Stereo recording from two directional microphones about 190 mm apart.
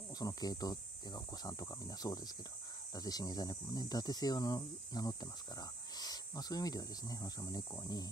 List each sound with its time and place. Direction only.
0.2 s speech: 20° left (ahead or behind)